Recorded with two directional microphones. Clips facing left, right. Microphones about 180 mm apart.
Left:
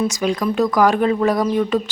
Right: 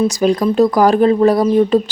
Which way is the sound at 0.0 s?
35° right (ahead or behind).